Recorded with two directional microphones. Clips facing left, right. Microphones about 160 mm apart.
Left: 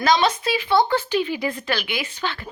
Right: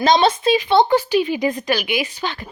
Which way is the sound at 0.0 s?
25° right (ahead or behind).